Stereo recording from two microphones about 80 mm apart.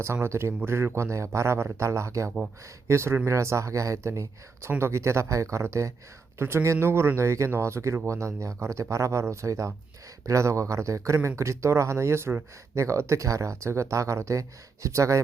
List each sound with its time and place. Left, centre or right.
0.0 s speech: right